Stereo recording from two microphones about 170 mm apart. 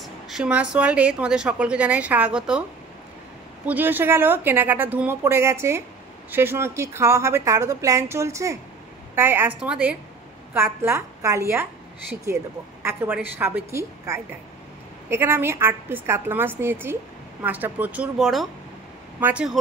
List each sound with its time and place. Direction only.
0.0 s a woman's voice: 5° right (ahead or behind)
3.6 s a woman's voice: 10° right (ahead or behind)
12.8 s a woman's voice: 15° right (ahead or behind)